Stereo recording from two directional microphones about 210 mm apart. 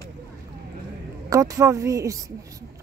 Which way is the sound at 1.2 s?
15° right (ahead or behind).